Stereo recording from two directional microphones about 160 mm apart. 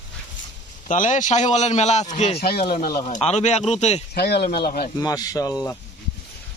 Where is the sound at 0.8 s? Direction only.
50° left (ahead or behind).